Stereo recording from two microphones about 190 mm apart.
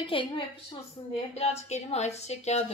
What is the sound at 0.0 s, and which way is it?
A woman's voice, 25° left (ahead or behind).